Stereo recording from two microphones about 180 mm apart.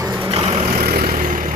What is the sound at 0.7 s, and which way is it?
Vehicle, 55° right (ahead or behind).